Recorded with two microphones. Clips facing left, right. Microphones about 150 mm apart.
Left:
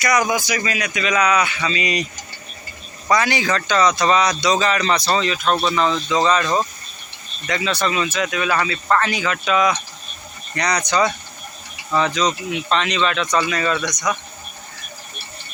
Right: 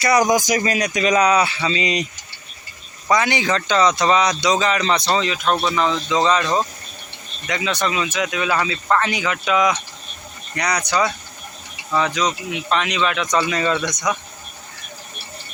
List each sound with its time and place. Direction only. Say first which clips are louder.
0.0 s speech: right 3 dB; 35° right (ahead or behind)
3.1 s a man's voice: even; 20° right (ahead or behind)